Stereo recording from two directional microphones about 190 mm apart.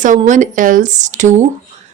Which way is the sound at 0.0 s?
40° right (ahead or behind).